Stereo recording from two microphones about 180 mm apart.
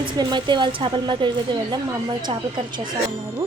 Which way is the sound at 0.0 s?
25° right (ahead or behind).